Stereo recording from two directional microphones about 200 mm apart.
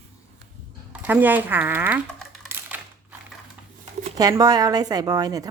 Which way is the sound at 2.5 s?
10° right (ahead or behind).